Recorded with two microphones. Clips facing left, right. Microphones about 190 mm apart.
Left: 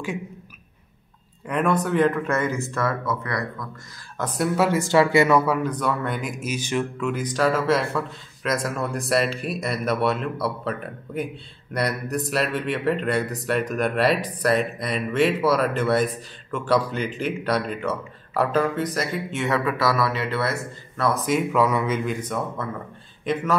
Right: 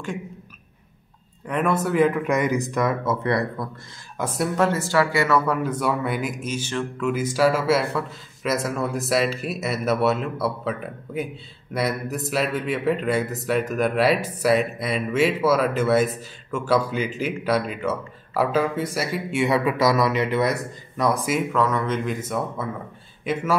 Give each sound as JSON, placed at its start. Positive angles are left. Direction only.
{"t": 1.5, "sound": "speech", "side_deg": -5}
{"t": 4.2, "sound": "speech", "side_deg": -10}
{"t": 4.6, "sound": "speech", "side_deg": 10}
{"t": 5.5, "sound": "speech", "side_deg": -5}
{"t": 6.4, "sound": "speech", "side_deg": 10}
{"t": 7.0, "sound": "speech", "side_deg": -5}
{"t": 21.5, "sound": "speech", "side_deg": 10}